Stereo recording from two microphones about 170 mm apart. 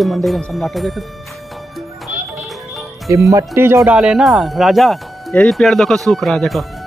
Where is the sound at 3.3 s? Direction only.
20° right (ahead or behind).